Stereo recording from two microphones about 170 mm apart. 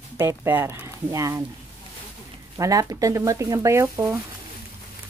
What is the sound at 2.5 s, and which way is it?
Speech, 20° right (ahead or behind).